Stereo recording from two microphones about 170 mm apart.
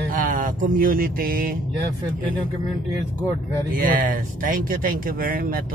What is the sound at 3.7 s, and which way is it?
Speech, 55° right (ahead or behind).